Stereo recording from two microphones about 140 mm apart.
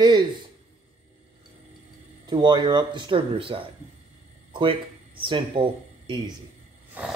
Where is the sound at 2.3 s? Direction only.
30° right (ahead or behind).